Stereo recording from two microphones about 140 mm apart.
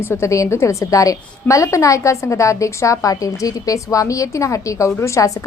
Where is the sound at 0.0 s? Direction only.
20° left (ahead or behind).